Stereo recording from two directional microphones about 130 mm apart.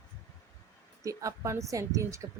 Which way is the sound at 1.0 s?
25° right (ahead or behind).